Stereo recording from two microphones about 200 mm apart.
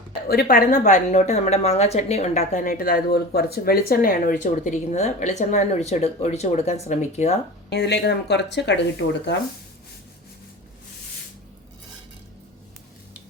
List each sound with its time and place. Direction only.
0.3 s a woman's voice: 50° left (ahead or behind)
0.7 s a woman's voice: 35° left (ahead or behind)
7.7 s speech: 55° left (ahead or behind)